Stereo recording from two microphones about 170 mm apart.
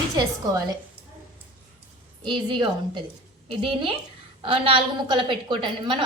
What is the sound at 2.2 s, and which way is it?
A woman's voice, 30° right (ahead or behind).